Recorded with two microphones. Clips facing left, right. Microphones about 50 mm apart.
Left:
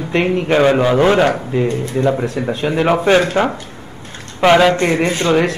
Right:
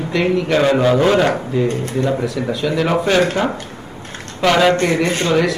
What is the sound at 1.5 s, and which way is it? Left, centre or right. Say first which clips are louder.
A man's voice: left 1 dB; left.